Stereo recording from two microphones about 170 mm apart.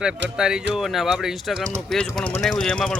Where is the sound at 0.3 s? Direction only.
5° right (ahead or behind).